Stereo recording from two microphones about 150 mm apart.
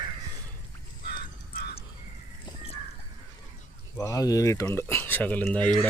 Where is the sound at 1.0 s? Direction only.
90° left.